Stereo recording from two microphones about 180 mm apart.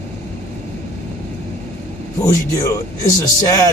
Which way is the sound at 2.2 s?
20° left (ahead or behind).